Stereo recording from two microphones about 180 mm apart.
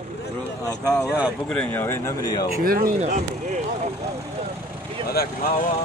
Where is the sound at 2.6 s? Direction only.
50° right (ahead or behind).